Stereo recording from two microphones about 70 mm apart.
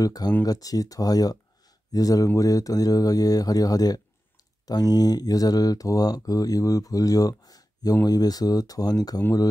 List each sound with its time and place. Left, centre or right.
0.0 s speech: left